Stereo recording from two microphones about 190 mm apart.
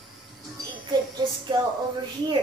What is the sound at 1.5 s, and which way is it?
Speech, 25° right (ahead or behind).